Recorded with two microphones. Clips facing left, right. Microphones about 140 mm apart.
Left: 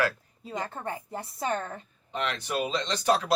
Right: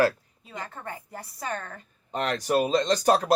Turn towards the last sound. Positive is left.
turn(degrees=-40)  # may be behind; listen again after turning